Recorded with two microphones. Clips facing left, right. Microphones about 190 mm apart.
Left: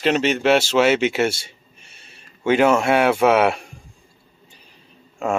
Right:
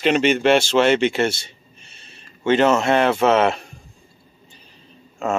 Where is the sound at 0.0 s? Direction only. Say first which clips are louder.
Right 2 dB; centre (ahead or behind).